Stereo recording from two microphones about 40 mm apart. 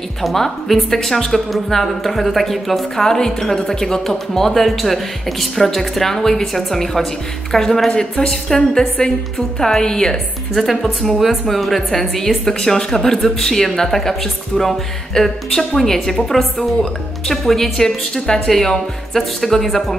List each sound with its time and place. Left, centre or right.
0.2 s a woman's voice: centre
10.5 s a woman's voice: centre